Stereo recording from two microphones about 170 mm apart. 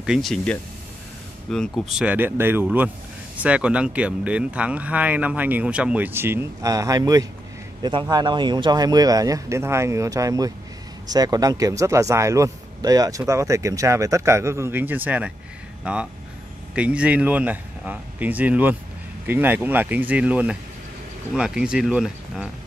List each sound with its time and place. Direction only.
0.0 s speech: centre (ahead or behind)